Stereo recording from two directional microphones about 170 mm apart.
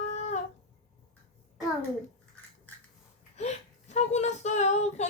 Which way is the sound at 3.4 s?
40° left (ahead or behind).